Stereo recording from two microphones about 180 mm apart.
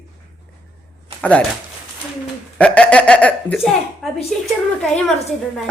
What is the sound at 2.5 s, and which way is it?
A woman's voice, 5° left (ahead or behind).